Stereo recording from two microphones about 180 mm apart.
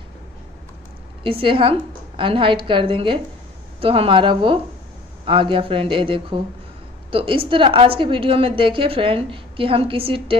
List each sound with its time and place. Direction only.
1.2 s a woman's voice: 30° right (ahead or behind)